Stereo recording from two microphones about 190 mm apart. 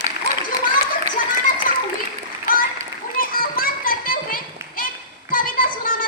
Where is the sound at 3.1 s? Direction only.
50° left (ahead or behind).